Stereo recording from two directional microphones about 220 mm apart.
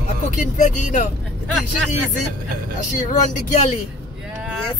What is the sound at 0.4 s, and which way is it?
Speech, 35° left (ahead or behind).